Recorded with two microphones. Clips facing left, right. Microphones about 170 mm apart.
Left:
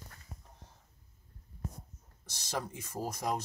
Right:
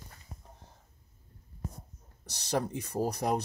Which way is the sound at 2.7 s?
35° right (ahead or behind).